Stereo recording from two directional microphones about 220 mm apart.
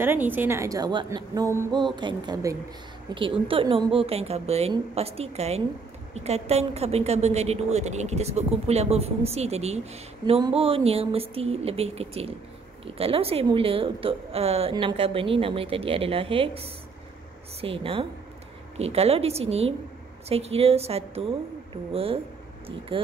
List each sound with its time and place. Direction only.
0.0 s a woman's voice: 10° right (ahead or behind); by 22.2 s 25° right (ahead or behind)